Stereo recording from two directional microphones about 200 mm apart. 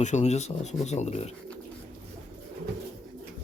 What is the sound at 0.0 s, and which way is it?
Speech, 35° left (ahead or behind).